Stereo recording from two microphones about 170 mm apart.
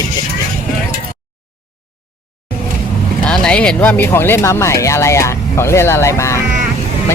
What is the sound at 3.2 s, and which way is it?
Speech, 5° left (ahead or behind).